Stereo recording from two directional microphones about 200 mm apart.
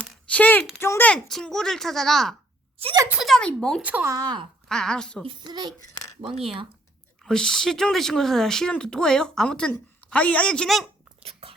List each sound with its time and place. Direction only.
0.0 s a sound: 5° left (ahead or behind)
0.8 s speech: 10° left (ahead or behind)
2.8 s a child's voice: 20° right (ahead or behind)
3.1 s speech: centre (ahead or behind)
3.8 s speech: 10° right (ahead or behind)
4.7 s speech: 5° left (ahead or behind)
5.2 s a child's voice: 25° right (ahead or behind)
7.3 s speech: centre (ahead or behind)
11.2 s a sound: 30° right (ahead or behind)